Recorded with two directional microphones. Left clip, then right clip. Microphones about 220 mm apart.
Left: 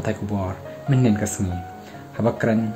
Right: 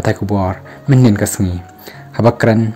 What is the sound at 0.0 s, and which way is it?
Speech, 40° right (ahead or behind).